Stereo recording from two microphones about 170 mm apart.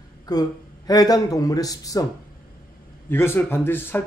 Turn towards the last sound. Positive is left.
turn(degrees=10)  # may be behind; listen again after turning